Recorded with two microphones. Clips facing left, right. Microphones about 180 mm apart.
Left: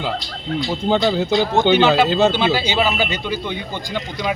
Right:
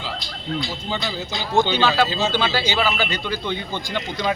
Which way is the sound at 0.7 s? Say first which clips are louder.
Left 10 dB; 55° left (ahead or behind).